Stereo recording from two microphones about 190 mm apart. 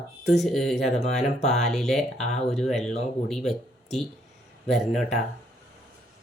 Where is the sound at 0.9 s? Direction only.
35° left (ahead or behind).